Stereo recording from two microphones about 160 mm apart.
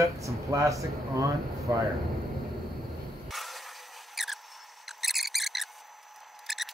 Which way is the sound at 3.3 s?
Centre (ahead or behind).